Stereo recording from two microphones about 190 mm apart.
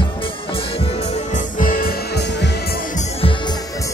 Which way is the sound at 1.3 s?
45° left (ahead or behind).